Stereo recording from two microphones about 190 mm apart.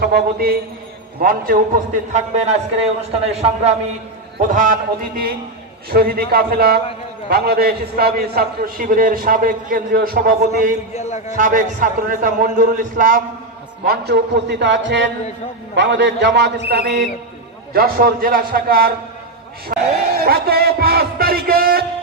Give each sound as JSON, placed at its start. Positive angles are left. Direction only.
{"t": 0.0, "sound": "a man's voice", "side_deg": -55}
{"t": 4.4, "sound": "a man's voice", "side_deg": -45}
{"t": 10.9, "sound": "a man's voice", "side_deg": 35}
{"t": 11.3, "sound": "a man's voice", "side_deg": -45}
{"t": 13.8, "sound": "a man's voice", "side_deg": -55}